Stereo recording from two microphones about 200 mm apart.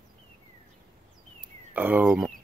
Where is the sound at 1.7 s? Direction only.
5° right (ahead or behind).